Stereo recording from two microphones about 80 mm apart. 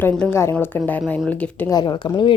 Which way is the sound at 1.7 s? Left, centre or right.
Left.